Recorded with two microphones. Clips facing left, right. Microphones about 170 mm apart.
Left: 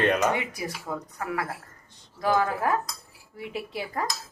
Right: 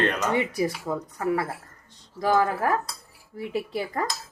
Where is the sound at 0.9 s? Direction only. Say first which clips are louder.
Right 4 dB; 35° right (ahead or behind).